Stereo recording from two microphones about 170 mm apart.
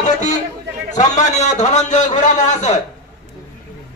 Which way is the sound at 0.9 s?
45° left (ahead or behind).